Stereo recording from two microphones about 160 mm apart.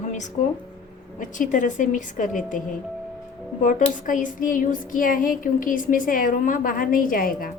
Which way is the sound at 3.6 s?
55° left (ahead or behind).